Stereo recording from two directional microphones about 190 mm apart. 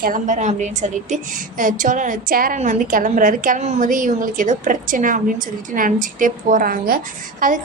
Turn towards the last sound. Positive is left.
turn(degrees=-45)  # may be behind; listen again after turning